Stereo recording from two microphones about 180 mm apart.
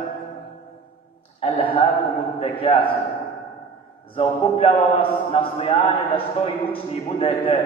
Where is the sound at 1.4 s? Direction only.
30° left (ahead or behind).